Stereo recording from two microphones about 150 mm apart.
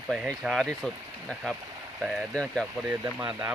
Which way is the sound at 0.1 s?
5° right (ahead or behind).